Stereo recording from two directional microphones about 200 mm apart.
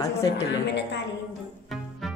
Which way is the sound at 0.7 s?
60° left (ahead or behind).